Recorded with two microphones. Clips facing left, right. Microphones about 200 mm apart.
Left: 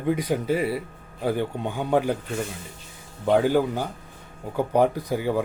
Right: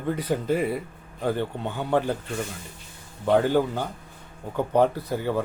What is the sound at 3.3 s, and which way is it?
A man's voice, 10° left (ahead or behind).